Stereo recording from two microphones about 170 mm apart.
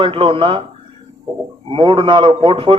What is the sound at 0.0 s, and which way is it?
Speech, 30° right (ahead or behind).